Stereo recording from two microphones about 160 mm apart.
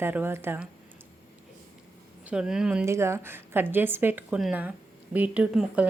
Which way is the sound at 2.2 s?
5° right (ahead or behind).